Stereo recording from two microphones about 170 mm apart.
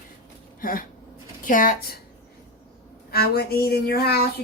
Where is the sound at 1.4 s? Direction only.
55° left (ahead or behind).